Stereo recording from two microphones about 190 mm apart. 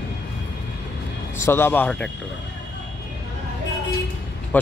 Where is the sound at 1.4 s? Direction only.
10° left (ahead or behind).